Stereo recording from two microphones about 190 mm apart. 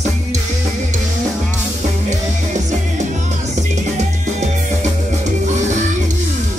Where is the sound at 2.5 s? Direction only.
40° right (ahead or behind).